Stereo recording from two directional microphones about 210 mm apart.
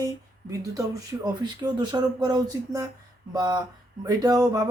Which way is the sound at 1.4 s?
20° right (ahead or behind).